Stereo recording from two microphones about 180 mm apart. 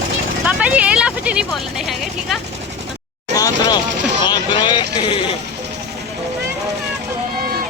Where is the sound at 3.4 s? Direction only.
20° left (ahead or behind).